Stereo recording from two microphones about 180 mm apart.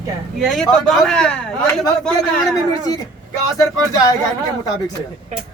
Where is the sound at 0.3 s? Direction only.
Centre (ahead or behind).